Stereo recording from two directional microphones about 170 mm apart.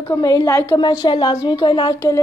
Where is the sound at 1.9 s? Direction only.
15° left (ahead or behind).